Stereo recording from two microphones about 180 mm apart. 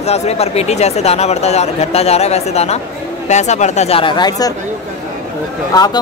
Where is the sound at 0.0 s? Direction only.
35° left (ahead or behind).